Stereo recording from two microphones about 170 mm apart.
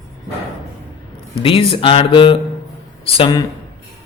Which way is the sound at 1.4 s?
30° left (ahead or behind).